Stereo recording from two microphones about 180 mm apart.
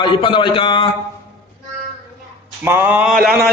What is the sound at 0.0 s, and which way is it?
Speech, 30° left (ahead or behind).